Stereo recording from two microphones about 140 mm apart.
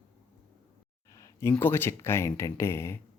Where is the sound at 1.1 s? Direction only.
20° left (ahead or behind).